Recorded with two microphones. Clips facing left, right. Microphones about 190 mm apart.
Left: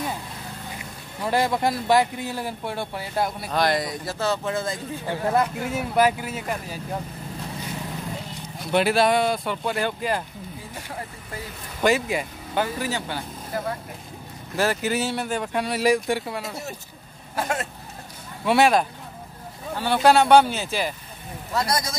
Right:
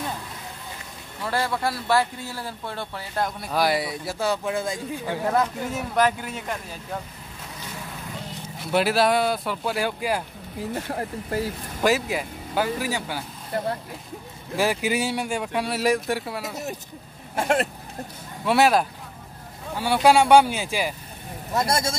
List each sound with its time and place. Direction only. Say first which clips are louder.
1.2 s speech: left 3 dB; 15° left (ahead or behind)
3.5 s speech: even; 10° right (ahead or behind)
5.3 s speech: left 2 dB; 10° left (ahead or behind)
8.5 s speech: left 1 dB; centre (ahead or behind)
10.7 s speech: right 9 dB; 50° right (ahead or behind)
11.8 s speech: left 1 dB; centre (ahead or behind)
14.6 s speech: even; 10° right (ahead or behind)
18.4 s speech: left 1 dB; centre (ahead or behind)
21.5 s speech: right 2 dB; 25° right (ahead or behind)